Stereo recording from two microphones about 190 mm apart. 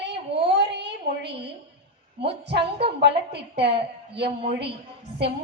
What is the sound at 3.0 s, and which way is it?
A woman's voice, 60° right (ahead or behind).